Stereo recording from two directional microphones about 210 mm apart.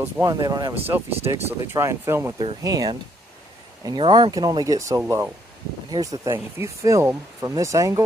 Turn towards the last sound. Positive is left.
turn(degrees=-15)  # may be behind; listen again after turning